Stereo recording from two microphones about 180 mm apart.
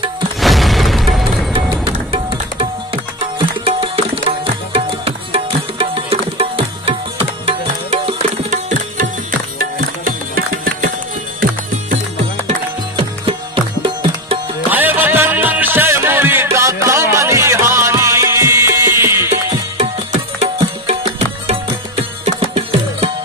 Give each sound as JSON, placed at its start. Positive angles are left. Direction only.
{"t": 0.4, "sound": "music", "side_deg": 0}
{"t": 2.1, "sound": "tabla", "side_deg": -30}
{"t": 9.6, "sound": "music", "side_deg": -55}
{"t": 12.4, "sound": "music", "side_deg": -30}
{"t": 14.7, "sound": "music", "side_deg": -10}
{"t": 19.8, "sound": "music", "side_deg": -35}